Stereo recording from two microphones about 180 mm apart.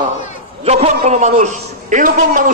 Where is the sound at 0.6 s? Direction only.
35° right (ahead or behind).